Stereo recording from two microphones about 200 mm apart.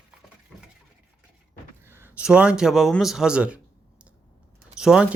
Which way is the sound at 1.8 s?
10° right (ahead or behind).